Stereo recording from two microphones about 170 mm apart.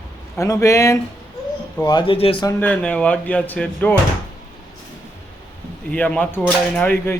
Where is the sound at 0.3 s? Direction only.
20° left (ahead or behind).